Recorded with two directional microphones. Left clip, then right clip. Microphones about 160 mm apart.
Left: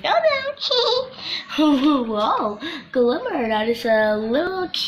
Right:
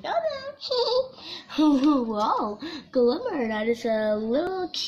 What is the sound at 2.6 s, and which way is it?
A woman's voice, 65° right (ahead or behind).